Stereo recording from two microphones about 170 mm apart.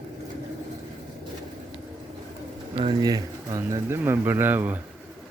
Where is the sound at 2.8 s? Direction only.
25° right (ahead or behind).